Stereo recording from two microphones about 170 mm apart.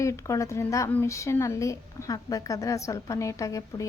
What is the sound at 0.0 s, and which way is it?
A woman's voice, 20° left (ahead or behind).